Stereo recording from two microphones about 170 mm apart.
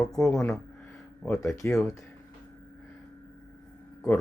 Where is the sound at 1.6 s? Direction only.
10° left (ahead or behind).